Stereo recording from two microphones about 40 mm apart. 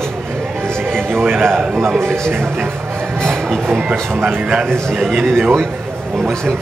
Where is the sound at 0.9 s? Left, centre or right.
Right.